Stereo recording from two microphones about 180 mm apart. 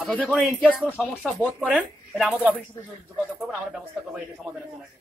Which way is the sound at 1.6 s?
5° right (ahead or behind).